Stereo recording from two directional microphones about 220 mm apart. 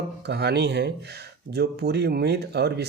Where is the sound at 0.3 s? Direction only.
50° right (ahead or behind).